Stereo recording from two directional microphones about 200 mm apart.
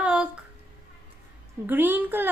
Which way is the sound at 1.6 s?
10° right (ahead or behind).